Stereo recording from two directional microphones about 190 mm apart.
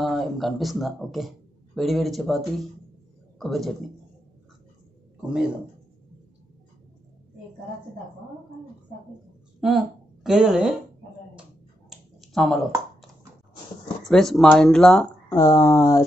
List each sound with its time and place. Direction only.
0.0 s a man's voice: centre (ahead or behind)
9.6 s a woman's voice: centre (ahead or behind)
11.9 s a sound: centre (ahead or behind)
14.0 s speech: centre (ahead or behind)
15.3 s speech: 15° left (ahead or behind)